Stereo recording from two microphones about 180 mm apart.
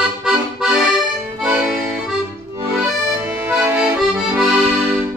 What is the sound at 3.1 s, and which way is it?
Accordion, 10° right (ahead or behind).